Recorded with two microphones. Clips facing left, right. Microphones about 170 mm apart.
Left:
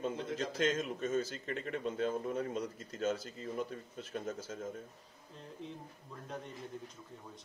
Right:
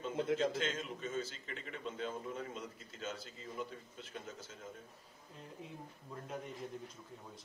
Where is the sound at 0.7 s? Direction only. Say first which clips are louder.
Left 7 dB; 45° left (ahead or behind).